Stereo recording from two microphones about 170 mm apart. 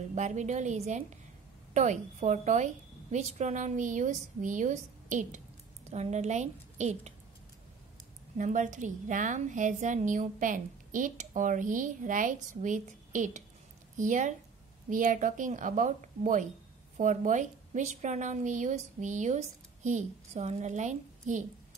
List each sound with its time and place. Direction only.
0.1 s a woman's voice: 45° right (ahead or behind)
8.4 s a woman's voice: 45° right (ahead or behind)